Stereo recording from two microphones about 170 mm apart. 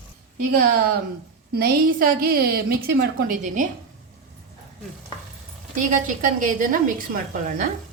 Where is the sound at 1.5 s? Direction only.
60° right (ahead or behind).